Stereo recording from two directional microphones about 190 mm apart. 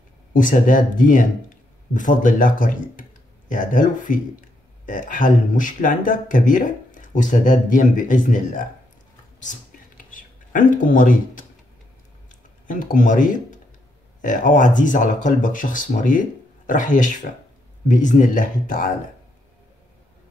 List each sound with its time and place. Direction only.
0.3 s speech: 45° left (ahead or behind)
9.4 s whispering: 45° left (ahead or behind)
12.6 s speech: 45° left (ahead or behind)